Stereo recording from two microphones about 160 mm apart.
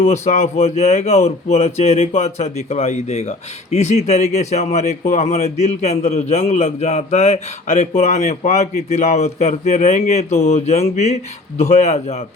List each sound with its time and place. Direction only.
0.0 s speech: 45° left (ahead or behind)